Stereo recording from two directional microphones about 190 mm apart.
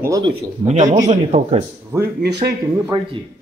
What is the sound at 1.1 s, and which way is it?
Speech, 35° right (ahead or behind).